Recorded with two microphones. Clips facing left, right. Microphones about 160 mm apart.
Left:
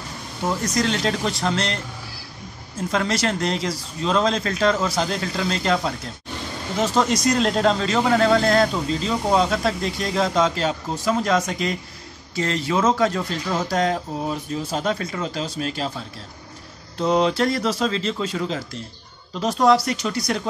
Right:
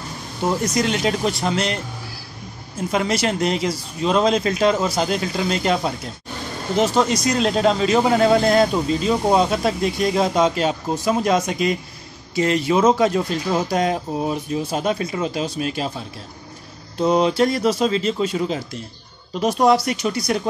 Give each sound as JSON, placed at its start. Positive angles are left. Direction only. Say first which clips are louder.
{"t": 0.7, "sound": "speech", "louder": "right 2 dB", "side_deg": -10}
{"t": 2.9, "sound": "speech", "louder": "right 2 dB", "side_deg": -15}
{"t": 7.0, "sound": "speech", "louder": "right 1 dB", "side_deg": 0}
{"t": 17.0, "sound": "speech", "louder": "right 2 dB", "side_deg": -15}